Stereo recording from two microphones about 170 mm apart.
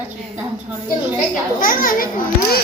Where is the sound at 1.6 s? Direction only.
55° left (ahead or behind).